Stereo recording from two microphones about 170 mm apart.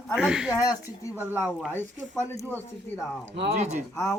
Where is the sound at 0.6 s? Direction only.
15° left (ahead or behind).